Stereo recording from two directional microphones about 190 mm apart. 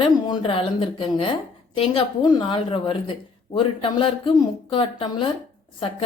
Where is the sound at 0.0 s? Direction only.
30° left (ahead or behind).